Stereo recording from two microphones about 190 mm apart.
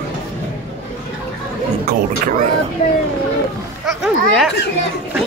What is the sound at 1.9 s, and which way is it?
Speech, 45° right (ahead or behind).